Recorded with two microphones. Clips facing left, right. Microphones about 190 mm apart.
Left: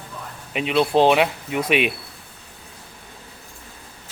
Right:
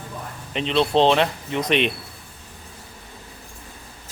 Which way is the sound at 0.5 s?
10° left (ahead or behind).